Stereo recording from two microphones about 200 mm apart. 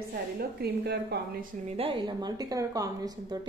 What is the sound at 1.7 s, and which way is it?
A woman's voice, 25° right (ahead or behind).